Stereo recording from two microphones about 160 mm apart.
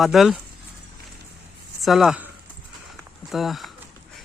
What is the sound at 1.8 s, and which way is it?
Speech, centre (ahead or behind).